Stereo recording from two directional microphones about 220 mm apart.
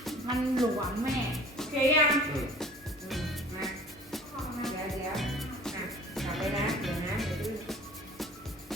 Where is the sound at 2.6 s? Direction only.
Centre (ahead or behind).